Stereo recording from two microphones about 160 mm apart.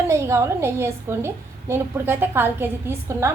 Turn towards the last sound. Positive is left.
turn(degrees=-15)  # may be behind; listen again after turning